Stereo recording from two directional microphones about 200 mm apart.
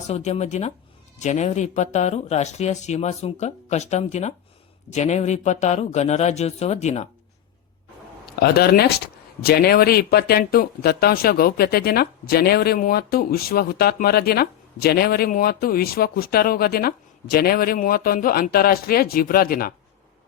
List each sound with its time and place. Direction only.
0.1 s speech: 35° left (ahead or behind)
8.4 s speech: 50° left (ahead or behind)